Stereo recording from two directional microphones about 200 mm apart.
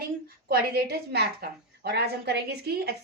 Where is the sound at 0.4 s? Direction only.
50° right (ahead or behind).